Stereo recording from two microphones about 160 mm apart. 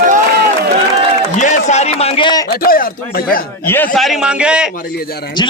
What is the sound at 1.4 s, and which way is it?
Speech, 50° left (ahead or behind).